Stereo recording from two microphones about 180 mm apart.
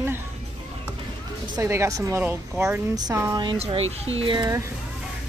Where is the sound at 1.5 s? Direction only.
15° right (ahead or behind).